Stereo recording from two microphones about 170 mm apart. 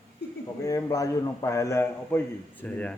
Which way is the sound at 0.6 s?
20° left (ahead or behind).